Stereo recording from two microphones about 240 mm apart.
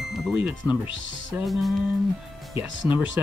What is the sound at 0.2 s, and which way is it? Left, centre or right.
Speech, centre.